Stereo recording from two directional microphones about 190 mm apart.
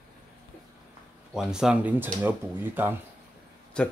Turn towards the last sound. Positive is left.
turn(degrees=5)  # may be behind; listen again after turning